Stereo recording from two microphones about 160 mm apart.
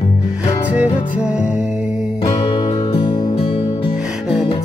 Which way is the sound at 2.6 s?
30° left (ahead or behind).